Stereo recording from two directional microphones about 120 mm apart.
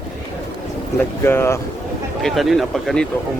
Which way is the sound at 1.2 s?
20° left (ahead or behind).